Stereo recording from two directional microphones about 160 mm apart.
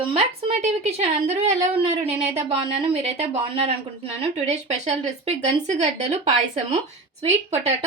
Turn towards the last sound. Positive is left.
turn(degrees=-45)  # may be behind; listen again after turning